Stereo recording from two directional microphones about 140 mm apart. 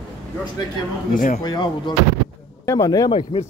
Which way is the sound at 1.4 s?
35° left (ahead or behind).